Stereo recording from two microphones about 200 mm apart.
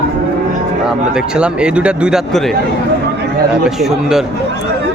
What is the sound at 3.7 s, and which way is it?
Speech, centre (ahead or behind).